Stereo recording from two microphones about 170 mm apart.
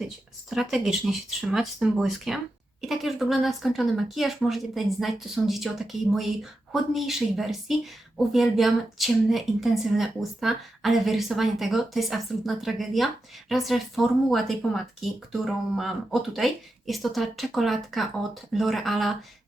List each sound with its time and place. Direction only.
0.5 s speech: centre (ahead or behind)